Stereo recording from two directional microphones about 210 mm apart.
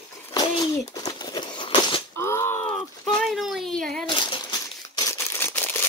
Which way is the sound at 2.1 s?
10° left (ahead or behind).